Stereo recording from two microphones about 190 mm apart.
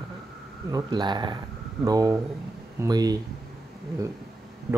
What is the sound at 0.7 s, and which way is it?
Speech, 20° right (ahead or behind).